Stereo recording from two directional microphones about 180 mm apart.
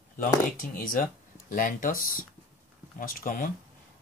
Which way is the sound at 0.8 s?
50° left (ahead or behind).